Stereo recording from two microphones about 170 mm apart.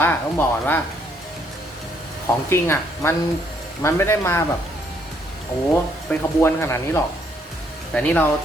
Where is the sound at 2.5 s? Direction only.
15° left (ahead or behind).